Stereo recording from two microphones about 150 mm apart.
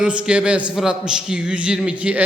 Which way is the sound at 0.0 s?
5° right (ahead or behind).